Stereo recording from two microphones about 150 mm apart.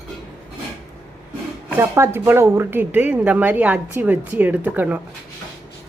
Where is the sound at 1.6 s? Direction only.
15° right (ahead or behind).